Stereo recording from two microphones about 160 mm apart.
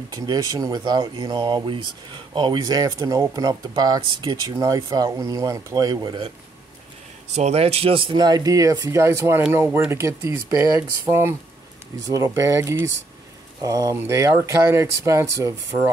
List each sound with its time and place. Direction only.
0.1 s speech: 25° right (ahead or behind)
7.2 s speech: 45° right (ahead or behind); by 15.9 s 20° right (ahead or behind)